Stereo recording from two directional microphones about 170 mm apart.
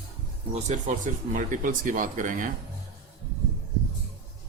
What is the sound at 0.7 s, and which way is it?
Speech, 50° right (ahead or behind).